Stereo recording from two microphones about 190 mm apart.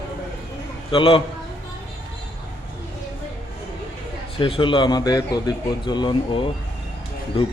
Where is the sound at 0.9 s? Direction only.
25° left (ahead or behind).